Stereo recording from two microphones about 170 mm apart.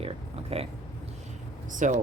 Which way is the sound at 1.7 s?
50° right (ahead or behind).